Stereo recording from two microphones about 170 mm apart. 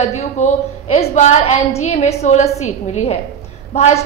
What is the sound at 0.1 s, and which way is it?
A woman's voice, 40° left (ahead or behind).